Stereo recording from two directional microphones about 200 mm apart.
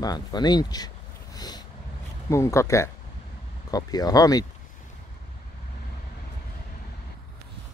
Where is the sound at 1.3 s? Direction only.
20° left (ahead or behind).